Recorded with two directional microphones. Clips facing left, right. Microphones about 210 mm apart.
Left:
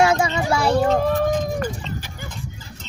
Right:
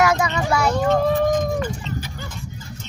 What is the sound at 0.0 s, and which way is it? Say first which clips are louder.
Children playing: left 1 dB; 25° left (ahead or behind).